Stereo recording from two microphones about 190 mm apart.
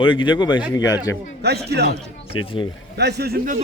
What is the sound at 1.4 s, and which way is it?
Speech, 60° right (ahead or behind).